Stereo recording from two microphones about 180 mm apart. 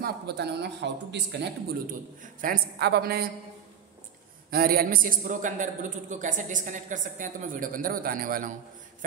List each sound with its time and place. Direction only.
0.0 s a woman's voice: 70° right (ahead or behind)
4.5 s a man's voice: 55° right (ahead or behind)